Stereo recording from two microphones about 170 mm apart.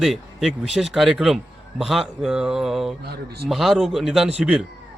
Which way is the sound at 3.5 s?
Centre (ahead or behind).